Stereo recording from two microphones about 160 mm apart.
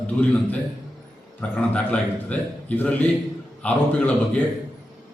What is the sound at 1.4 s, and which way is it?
A man's voice, 10° left (ahead or behind).